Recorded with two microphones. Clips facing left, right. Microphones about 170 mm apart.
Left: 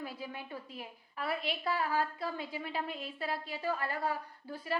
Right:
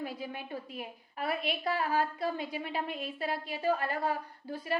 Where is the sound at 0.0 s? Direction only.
15° right (ahead or behind).